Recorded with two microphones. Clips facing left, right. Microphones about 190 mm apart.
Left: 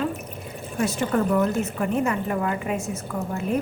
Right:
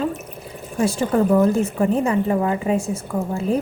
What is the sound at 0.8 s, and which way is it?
Speech, 30° right (ahead or behind).